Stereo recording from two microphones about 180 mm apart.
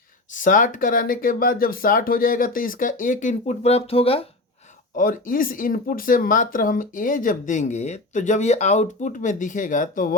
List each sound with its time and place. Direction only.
0.3 s speech: 45° left (ahead or behind); by 4.3 s 30° left (ahead or behind)
4.9 s speech: 50° left (ahead or behind)